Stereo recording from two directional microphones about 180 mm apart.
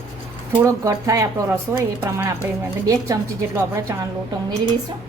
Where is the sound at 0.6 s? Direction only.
20° right (ahead or behind).